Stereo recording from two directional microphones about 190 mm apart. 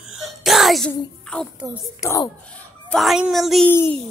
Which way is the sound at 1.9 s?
15° left (ahead or behind).